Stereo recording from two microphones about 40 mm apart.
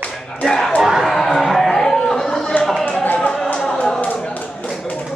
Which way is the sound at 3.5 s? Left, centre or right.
Centre.